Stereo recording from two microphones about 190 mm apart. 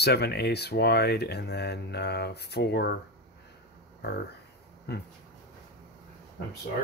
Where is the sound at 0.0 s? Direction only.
60° left (ahead or behind).